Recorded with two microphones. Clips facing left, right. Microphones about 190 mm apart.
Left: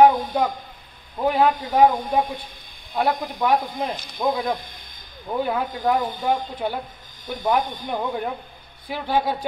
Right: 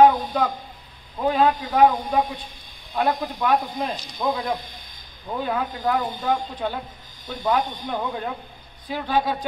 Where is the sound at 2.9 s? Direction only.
10° left (ahead or behind).